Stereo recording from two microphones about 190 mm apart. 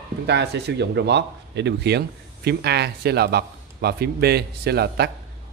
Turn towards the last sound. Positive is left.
turn(degrees=-60)  # may be behind; listen again after turning